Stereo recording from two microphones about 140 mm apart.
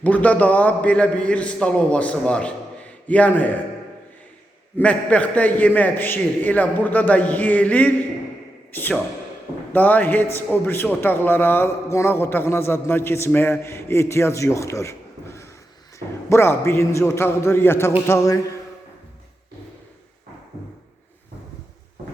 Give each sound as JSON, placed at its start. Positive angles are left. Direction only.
{"t": 0.0, "sound": "a man's voice", "side_deg": 10}
{"t": 4.8, "sound": "a man's voice", "side_deg": 10}